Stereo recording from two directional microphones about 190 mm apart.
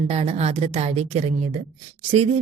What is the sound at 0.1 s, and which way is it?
A woman's voice, 35° right (ahead or behind).